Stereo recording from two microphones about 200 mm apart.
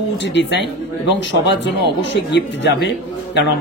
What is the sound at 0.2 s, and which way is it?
Speech, 60° left (ahead or behind).